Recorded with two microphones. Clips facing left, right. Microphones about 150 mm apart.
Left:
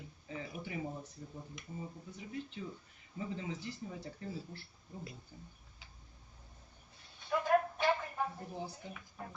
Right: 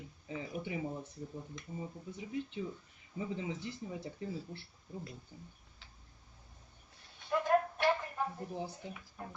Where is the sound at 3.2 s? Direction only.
20° right (ahead or behind).